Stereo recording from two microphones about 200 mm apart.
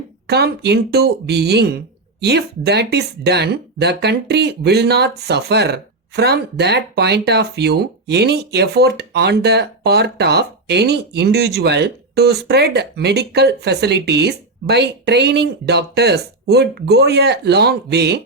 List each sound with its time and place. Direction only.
0.3 s speech: 55° right (ahead or behind)